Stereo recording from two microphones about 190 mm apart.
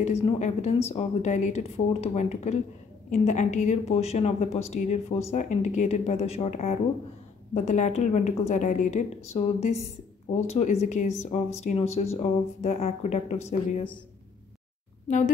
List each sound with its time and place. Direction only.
0.0 s speech: 35° left (ahead or behind)
15.0 s speech: 40° left (ahead or behind)